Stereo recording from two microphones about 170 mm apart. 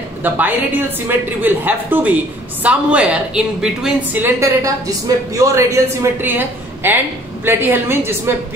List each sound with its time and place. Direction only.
0.2 s a woman's voice: 10° right (ahead or behind)